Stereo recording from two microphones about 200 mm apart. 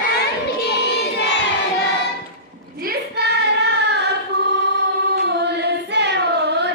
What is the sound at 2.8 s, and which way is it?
Child singing, 55° right (ahead or behind).